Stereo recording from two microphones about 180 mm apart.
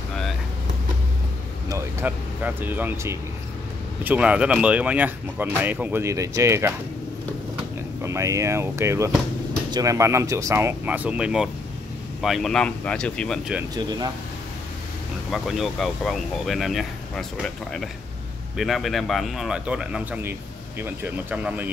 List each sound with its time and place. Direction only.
1.7 s speech: 10° right (ahead or behind)
8.0 s speech: 15° right (ahead or behind); by 13.4 s 5° left (ahead or behind)
13.7 s speech: 20° right (ahead or behind)
15.3 s speech: centre (ahead or behind)
18.6 s speech: centre (ahead or behind)